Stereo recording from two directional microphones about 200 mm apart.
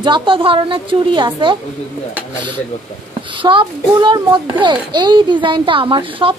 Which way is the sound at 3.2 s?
25° right (ahead or behind).